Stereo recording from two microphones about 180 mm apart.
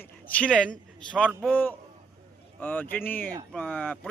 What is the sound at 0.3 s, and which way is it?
A man's voice, 5° left (ahead or behind).